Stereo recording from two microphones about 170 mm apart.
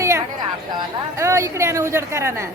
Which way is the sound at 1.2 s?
15° right (ahead or behind).